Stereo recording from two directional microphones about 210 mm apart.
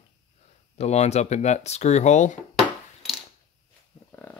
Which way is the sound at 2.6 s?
Centre (ahead or behind).